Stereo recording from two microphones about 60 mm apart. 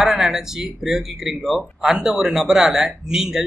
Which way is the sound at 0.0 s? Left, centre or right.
Centre.